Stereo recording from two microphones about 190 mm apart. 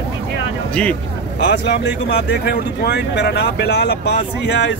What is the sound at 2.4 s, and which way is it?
Speech, 55° left (ahead or behind).